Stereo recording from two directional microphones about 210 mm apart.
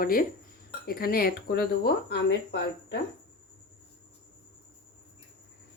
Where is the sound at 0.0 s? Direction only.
40° left (ahead or behind).